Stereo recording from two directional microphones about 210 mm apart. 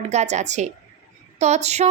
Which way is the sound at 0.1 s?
35° right (ahead or behind).